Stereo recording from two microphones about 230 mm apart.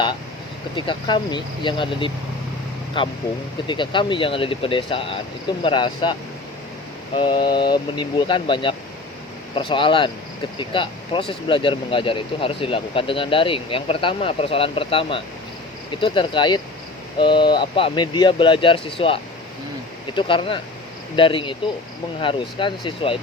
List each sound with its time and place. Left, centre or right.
0.8 s speech: left
7.2 s speech: centre